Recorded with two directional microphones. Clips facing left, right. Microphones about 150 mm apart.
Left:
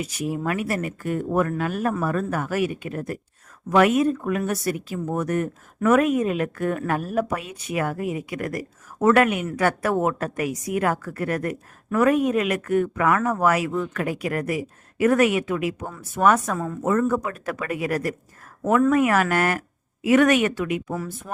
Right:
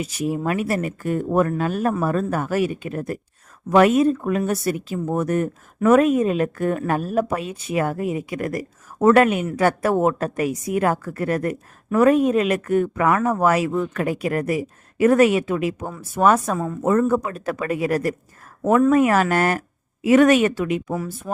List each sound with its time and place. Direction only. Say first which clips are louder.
0.0 s a woman's voice: right 3 dB; 25° right (ahead or behind)
20.9 s speech: right 4 dB; 15° right (ahead or behind)